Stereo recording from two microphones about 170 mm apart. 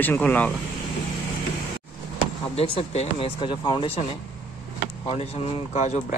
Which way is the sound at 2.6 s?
35° left (ahead or behind).